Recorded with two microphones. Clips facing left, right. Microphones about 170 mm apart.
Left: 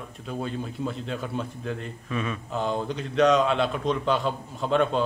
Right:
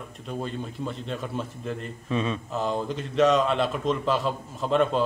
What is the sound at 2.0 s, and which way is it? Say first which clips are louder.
Mantra: right 3 dB; 25° right (ahead or behind).